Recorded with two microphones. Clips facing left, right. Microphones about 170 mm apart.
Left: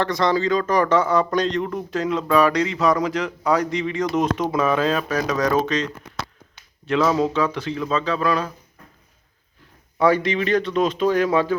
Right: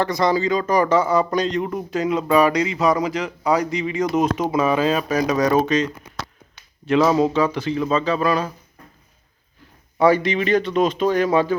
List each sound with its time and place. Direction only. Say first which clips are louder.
0.0 s speech: right 1 dB; 10° right (ahead or behind)
10.0 s speech: right 2 dB; centre (ahead or behind)